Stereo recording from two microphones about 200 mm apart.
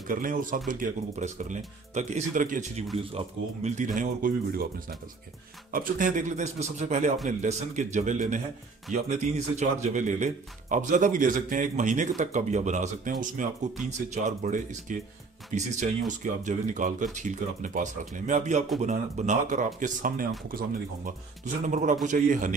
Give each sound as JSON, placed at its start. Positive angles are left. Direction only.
{"t": 0.1, "sound": "speech", "side_deg": -45}